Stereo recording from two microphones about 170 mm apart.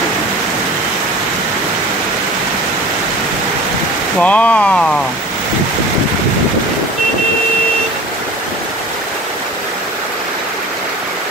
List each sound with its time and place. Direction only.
4.2 s speech: 10° left (ahead or behind)